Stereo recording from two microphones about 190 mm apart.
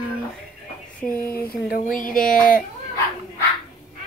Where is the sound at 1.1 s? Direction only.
50° left (ahead or behind).